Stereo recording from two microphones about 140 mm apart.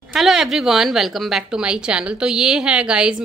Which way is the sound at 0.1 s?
Centre (ahead or behind).